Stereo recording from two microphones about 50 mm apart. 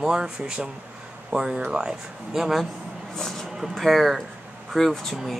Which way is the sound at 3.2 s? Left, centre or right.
Centre.